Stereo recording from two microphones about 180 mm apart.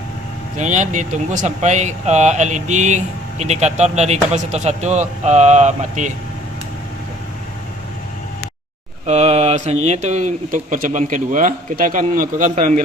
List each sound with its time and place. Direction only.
0.6 s speech: 40° right (ahead or behind)
9.0 s speech: 35° right (ahead or behind)